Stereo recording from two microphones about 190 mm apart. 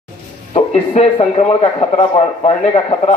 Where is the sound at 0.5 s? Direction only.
35° left (ahead or behind).